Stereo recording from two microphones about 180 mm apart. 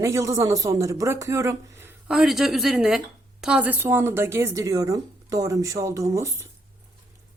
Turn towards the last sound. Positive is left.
turn(degrees=-15)  # may be behind; listen again after turning